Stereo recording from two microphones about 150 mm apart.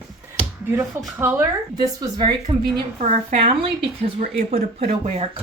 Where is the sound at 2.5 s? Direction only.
30° right (ahead or behind).